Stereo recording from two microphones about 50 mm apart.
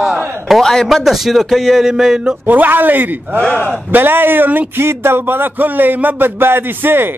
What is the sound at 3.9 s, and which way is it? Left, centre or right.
Speech, right.